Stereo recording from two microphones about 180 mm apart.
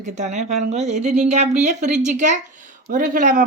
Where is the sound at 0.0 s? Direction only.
40° right (ahead or behind).